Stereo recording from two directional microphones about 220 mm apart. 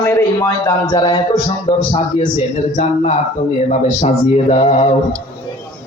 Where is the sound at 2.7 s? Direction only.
35° left (ahead or behind).